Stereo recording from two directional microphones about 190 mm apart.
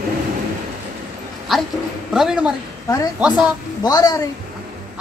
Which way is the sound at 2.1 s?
5° right (ahead or behind).